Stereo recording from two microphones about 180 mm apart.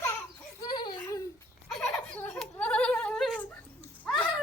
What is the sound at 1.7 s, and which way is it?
Laughter, 5° left (ahead or behind).